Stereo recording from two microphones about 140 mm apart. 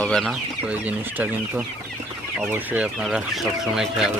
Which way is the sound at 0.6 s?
10° right (ahead or behind).